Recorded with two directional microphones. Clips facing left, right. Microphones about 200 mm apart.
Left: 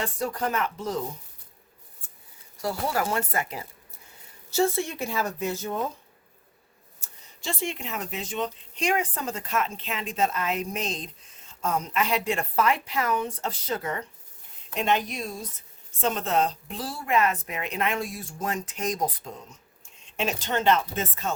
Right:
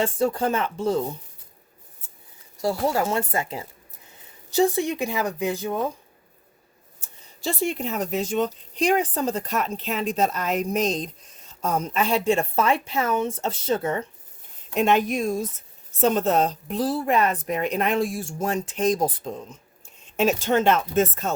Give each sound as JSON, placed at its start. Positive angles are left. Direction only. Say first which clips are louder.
{"t": 0.0, "sound": "a woman's voice", "louder": "right 6 dB", "side_deg": -25}
{"t": 2.6, "sound": "a woman's voice", "louder": "right 5 dB", "side_deg": -25}
{"t": 7.4, "sound": "a woman's voice", "louder": "right 6 dB", "side_deg": -40}
{"t": 14.8, "sound": "speech", "louder": "right 6 dB", "side_deg": -50}
{"t": 20.1, "sound": "speech", "louder": "right 7 dB", "side_deg": -45}